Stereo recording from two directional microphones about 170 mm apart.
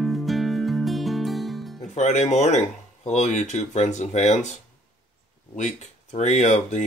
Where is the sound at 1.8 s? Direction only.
45° left (ahead or behind).